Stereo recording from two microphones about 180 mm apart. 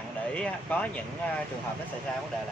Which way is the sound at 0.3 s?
5° left (ahead or behind).